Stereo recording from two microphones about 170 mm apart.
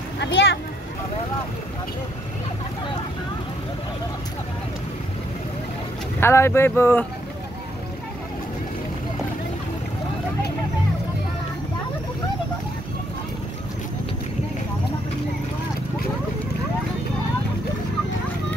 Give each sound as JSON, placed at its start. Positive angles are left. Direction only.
{"t": 0.2, "sound": "speech", "side_deg": 90}
{"t": 6.1, "sound": "speech", "side_deg": 15}